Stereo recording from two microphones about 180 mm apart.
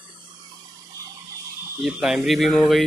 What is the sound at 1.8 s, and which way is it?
Speech, 5° right (ahead or behind).